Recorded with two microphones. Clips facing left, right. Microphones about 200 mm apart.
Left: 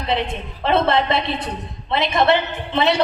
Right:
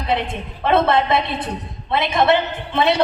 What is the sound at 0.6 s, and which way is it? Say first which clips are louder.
A woman's voice: right 1 dB; 55° right (ahead or behind).